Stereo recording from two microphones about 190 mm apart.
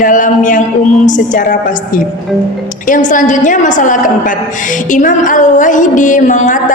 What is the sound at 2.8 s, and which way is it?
A woman's voice, 45° left (ahead or behind).